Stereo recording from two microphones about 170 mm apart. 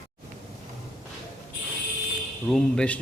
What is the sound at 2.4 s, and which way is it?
Speech, 5° left (ahead or behind).